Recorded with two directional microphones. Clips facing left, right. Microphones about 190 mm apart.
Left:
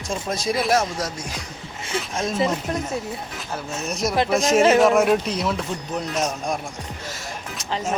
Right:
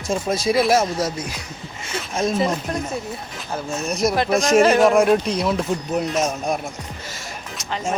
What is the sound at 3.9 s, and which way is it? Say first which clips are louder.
Speech: right 2 dB; centre (ahead or behind).